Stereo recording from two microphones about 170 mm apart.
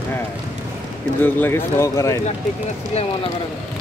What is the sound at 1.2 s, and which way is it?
Speech, 10° left (ahead or behind).